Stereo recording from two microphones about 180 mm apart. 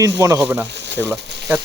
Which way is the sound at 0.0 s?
20° right (ahead or behind).